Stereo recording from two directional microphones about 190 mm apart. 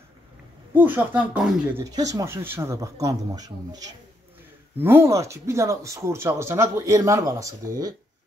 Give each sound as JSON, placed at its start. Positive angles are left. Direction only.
{"t": 0.7, "sound": "speech", "side_deg": -10}